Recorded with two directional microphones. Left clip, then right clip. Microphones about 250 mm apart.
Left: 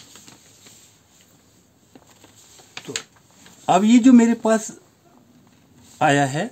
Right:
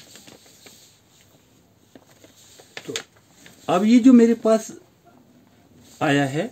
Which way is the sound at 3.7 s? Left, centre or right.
Left.